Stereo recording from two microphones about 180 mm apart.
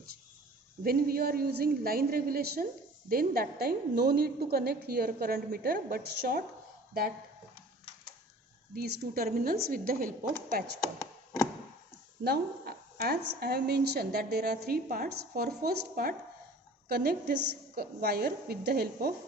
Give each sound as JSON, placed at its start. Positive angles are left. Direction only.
{"t": 0.9, "sound": "a woman's voice", "side_deg": -55}
{"t": 8.7, "sound": "a woman's voice", "side_deg": -55}
{"t": 11.0, "sound": "a sound", "side_deg": 15}
{"t": 12.2, "sound": "a woman's voice", "side_deg": -60}